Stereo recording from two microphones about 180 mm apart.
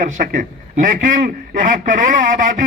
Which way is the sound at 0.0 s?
45° right (ahead or behind).